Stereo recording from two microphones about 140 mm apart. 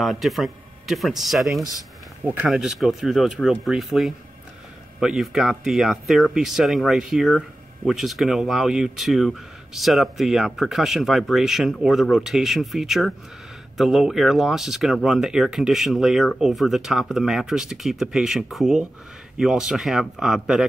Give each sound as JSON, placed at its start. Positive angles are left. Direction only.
{"t": 0.0, "sound": "speech", "side_deg": 0}
{"t": 1.6, "sound": "speech", "side_deg": 25}
{"t": 2.2, "sound": "speech", "side_deg": -10}